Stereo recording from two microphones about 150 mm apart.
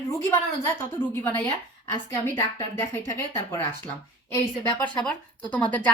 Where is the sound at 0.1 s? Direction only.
15° left (ahead or behind).